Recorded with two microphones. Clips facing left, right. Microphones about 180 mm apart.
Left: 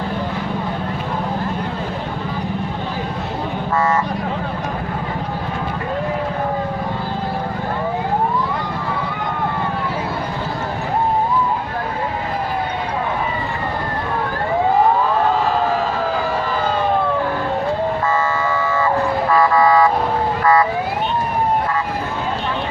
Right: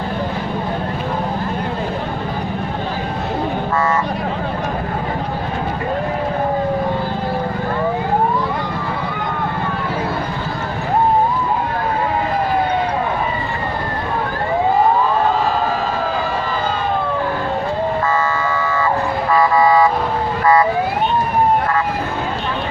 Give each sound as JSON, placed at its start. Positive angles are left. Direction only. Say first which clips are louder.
{"t": 19.4, "sound": "car alarm", "louder": "right 1 dB", "side_deg": -15}
{"t": 20.4, "sound": "emergency vehicle", "louder": "right 2 dB", "side_deg": -20}